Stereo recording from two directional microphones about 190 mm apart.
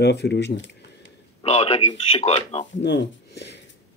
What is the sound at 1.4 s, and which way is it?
Speech, 35° left (ahead or behind).